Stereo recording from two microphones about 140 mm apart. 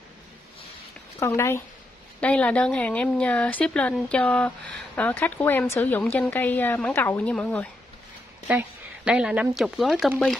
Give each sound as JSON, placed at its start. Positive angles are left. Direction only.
{"t": 1.2, "sound": "a woman's voice", "side_deg": 20}
{"t": 8.5, "sound": "speech", "side_deg": -10}